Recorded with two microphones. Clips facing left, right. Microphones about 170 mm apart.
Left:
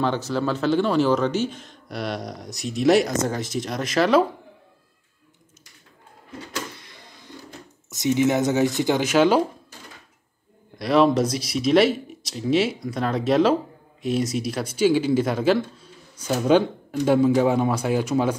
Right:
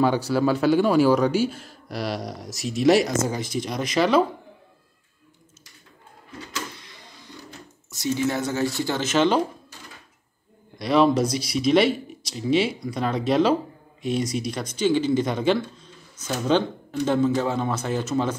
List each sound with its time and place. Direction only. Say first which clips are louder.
0.0 s speech: right 3 dB; 10° right (ahead or behind)
7.9 s speech: left 4 dB; 20° left (ahead or behind)
10.8 s speech: left 1 dB; centre (ahead or behind)